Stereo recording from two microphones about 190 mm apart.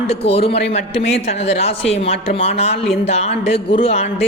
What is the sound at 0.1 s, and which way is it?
Speech, 30° left (ahead or behind).